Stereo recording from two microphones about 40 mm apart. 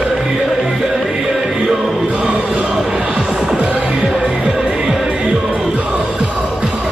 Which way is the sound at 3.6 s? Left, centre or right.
Right.